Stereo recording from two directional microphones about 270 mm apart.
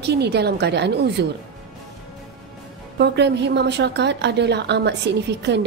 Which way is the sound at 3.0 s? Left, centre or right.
Right.